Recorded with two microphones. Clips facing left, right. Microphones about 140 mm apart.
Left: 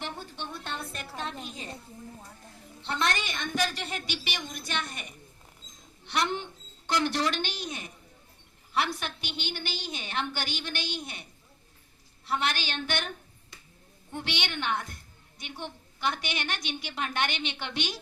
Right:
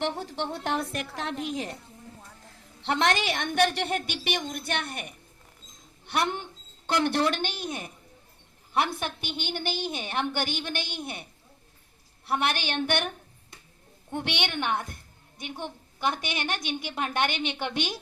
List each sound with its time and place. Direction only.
0.0 s a woman's voice: 85° right
2.8 s a woman's voice: 90° right; by 13.1 s 60° right (ahead or behind)
14.1 s a woman's voice: 55° right (ahead or behind)